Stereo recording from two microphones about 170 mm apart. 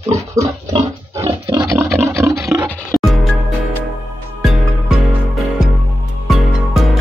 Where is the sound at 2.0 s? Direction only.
15° right (ahead or behind).